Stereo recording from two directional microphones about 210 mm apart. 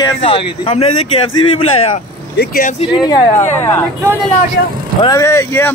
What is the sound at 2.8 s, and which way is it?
Speech, 20° left (ahead or behind).